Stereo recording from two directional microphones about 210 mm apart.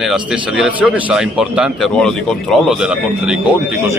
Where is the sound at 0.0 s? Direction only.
Centre (ahead or behind).